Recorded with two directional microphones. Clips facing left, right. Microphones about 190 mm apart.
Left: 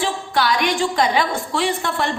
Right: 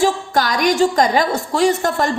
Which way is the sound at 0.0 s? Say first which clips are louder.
Right 4 dB; 45° right (ahead or behind).